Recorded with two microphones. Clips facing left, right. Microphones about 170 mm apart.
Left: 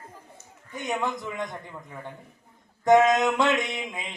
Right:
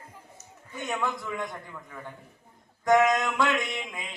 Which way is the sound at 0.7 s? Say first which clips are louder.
Left 2 dB; 20° left (ahead or behind).